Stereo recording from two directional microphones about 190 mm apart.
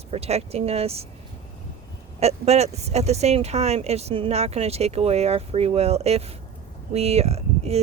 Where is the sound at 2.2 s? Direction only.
35° right (ahead or behind).